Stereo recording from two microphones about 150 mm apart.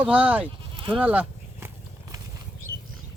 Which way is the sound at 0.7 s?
35° right (ahead or behind).